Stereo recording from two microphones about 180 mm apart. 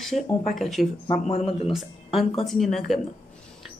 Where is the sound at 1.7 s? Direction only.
Centre (ahead or behind).